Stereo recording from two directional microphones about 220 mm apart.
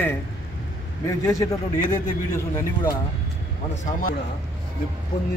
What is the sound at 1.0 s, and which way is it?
Speech, 15° left (ahead or behind).